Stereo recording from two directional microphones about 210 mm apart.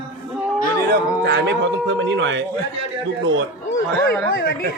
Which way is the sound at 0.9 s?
55° right (ahead or behind).